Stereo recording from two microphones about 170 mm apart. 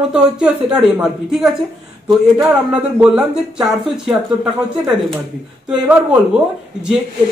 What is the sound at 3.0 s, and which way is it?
Speech, 5° right (ahead or behind).